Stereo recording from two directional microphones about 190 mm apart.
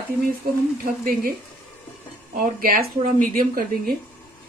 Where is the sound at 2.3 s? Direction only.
50° right (ahead or behind).